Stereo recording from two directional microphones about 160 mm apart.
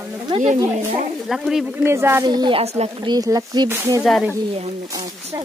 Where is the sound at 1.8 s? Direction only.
15° right (ahead or behind).